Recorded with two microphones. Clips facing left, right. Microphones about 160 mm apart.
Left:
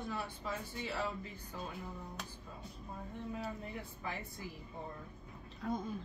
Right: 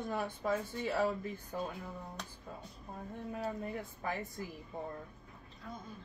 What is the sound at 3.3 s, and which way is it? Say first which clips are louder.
Speech: right 7 dB; 45° right (ahead or behind).